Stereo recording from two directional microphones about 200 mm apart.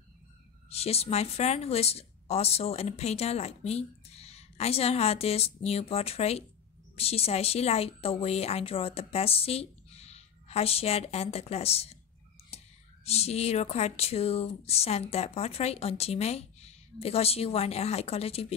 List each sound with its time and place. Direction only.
0.7 s a woman's voice: 30° left (ahead or behind)
13.0 s a woman's voice: 30° left (ahead or behind)